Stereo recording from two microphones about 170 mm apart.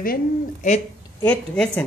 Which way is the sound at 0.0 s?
60° left (ahead or behind).